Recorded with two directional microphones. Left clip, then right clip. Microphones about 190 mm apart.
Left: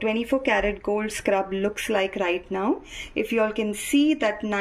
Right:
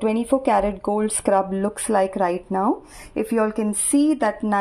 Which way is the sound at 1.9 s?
10° right (ahead or behind).